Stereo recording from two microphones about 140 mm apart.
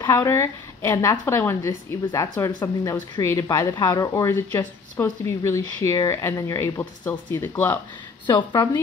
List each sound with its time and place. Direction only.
0.0 s a woman's voice: 20° left (ahead or behind)
8.3 s speech: 35° left (ahead or behind)